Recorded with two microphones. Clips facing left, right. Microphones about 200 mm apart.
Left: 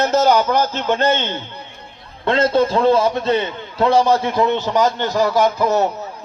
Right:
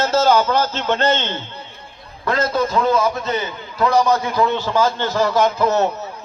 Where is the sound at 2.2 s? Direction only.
25° left (ahead or behind); by 5.9 s 10° left (ahead or behind).